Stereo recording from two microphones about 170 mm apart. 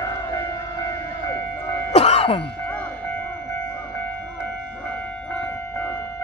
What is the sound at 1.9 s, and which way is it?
Cough, 40° left (ahead or behind).